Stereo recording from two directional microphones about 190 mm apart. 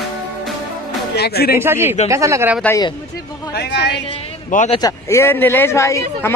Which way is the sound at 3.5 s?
65° left (ahead or behind).